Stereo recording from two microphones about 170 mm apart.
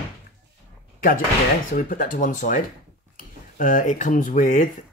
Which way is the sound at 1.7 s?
50° left (ahead or behind).